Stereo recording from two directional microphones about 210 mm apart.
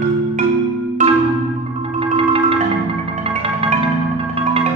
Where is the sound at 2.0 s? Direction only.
25° right (ahead or behind).